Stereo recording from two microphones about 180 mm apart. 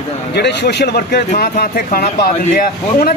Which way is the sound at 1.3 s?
50° left (ahead or behind).